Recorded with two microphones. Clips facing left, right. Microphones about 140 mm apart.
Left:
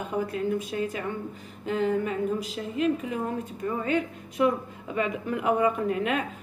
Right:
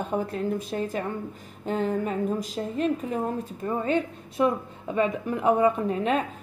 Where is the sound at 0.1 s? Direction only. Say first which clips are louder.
Left 1 dB; 30° right (ahead or behind).